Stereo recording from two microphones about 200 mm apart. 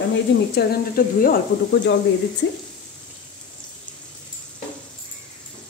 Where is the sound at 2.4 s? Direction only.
65° left (ahead or behind).